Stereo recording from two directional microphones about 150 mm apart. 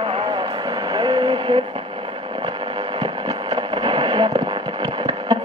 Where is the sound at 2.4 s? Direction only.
25° right (ahead or behind).